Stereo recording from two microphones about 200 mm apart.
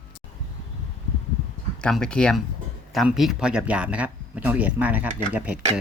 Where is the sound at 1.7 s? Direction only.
5° left (ahead or behind).